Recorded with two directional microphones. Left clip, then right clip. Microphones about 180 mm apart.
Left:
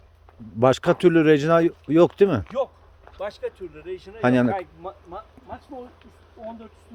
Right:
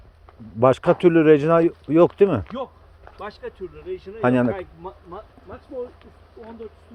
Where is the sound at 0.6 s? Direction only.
25° left (ahead or behind).